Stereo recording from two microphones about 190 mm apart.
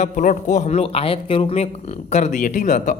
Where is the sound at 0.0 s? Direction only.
40° left (ahead or behind).